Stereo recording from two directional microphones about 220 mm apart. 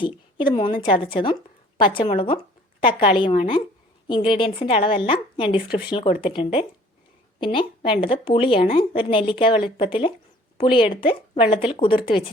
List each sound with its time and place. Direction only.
0.0 s a woman's voice: 20° left (ahead or behind)